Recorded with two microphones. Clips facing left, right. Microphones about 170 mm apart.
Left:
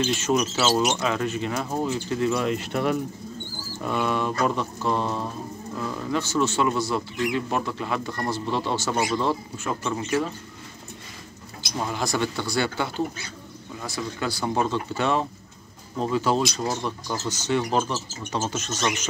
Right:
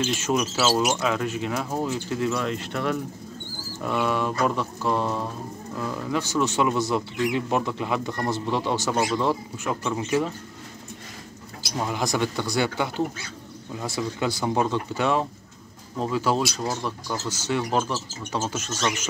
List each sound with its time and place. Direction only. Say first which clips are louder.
0.0 s speech: left 1 dB; 5° right (ahead or behind)
2.3 s speech: left 3 dB; 10° left (ahead or behind)
3.8 s speech: even; centre (ahead or behind)
11.9 s speech: right 1 dB; 15° right (ahead or behind)
14.4 s speech: even; 10° right (ahead or behind)